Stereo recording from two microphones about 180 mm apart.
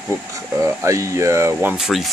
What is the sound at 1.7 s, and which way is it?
Speech, centre (ahead or behind).